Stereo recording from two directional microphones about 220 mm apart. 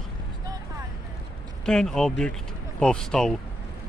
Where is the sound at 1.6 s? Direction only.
5° left (ahead or behind).